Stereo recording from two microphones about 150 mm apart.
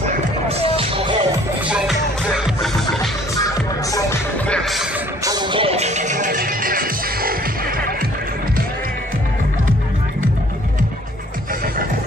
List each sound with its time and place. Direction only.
0.5 s music: 40° right (ahead or behind)
1.7 s music: 5° right (ahead or behind)
4.5 s music: centre (ahead or behind)
5.2 s music: 30° right (ahead or behind); by 7.9 s 75° right (ahead or behind)